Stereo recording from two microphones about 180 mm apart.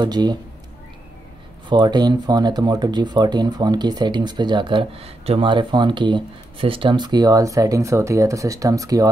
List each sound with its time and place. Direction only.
0.0 s speech: 25° right (ahead or behind)
1.7 s speech: 25° right (ahead or behind)